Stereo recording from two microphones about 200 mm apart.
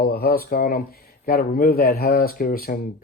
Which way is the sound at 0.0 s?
50° left (ahead or behind).